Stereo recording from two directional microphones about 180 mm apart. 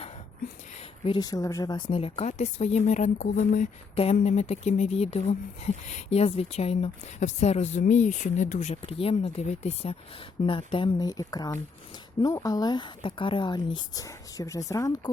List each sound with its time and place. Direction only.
1.0 s speech: 25° left (ahead or behind)